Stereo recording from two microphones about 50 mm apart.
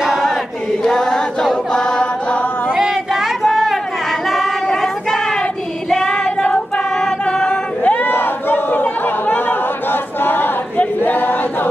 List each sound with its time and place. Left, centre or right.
0.8 s chant: centre
2.8 s a sound: centre
4.3 s child singing: centre
7.8 s chatter: left
11.0 s choir: left